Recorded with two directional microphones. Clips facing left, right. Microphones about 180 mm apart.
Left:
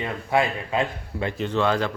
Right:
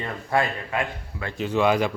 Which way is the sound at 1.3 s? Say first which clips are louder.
Right 3 dB; 5° right (ahead or behind).